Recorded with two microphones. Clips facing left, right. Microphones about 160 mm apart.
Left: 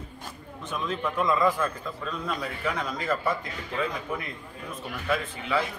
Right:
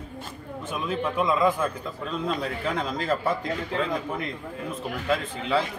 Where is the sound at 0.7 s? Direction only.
10° right (ahead or behind); by 3.3 s 30° right (ahead or behind).